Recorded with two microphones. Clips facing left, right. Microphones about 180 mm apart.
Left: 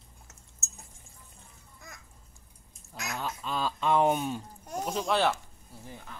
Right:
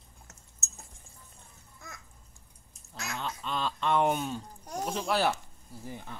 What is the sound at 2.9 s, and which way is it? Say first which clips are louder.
Duck: left 1 dB; 20° left (ahead or behind).